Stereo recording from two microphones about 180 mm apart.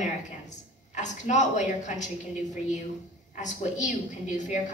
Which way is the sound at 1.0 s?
40° left (ahead or behind).